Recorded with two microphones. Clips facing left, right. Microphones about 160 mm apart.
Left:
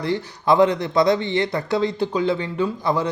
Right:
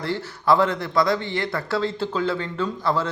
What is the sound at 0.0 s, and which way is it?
A man's voice, 15° left (ahead or behind).